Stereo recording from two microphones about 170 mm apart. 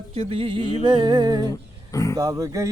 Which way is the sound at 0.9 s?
25° right (ahead or behind).